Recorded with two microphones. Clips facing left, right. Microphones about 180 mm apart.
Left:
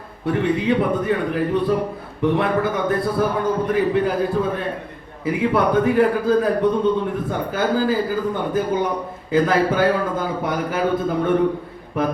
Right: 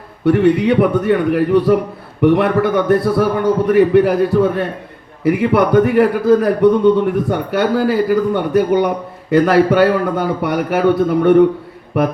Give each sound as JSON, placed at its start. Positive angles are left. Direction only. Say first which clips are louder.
{"t": 0.3, "sound": "a man's voice", "louder": "right 7 dB", "side_deg": -75}